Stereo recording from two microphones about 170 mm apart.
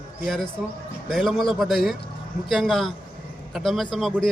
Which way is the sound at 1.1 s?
Centre (ahead or behind).